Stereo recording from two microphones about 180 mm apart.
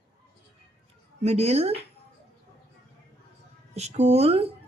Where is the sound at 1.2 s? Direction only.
35° right (ahead or behind).